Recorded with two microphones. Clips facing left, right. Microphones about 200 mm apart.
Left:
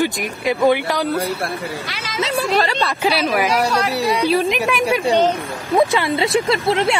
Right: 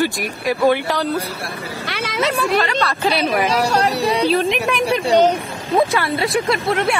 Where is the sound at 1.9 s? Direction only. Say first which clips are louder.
Right 6 dB; 60° right (ahead or behind).